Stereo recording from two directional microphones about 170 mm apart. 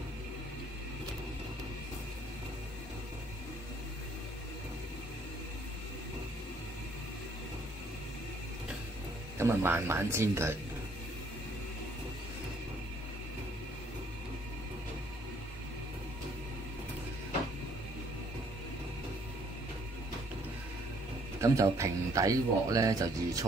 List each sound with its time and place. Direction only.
9.4 s speech: 15° right (ahead or behind)
21.4 s speech: 15° right (ahead or behind)